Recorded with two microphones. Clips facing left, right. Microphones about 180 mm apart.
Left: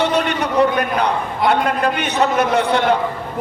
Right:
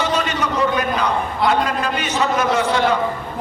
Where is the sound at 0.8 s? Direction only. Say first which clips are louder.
Left 1 dB; 60° left (ahead or behind).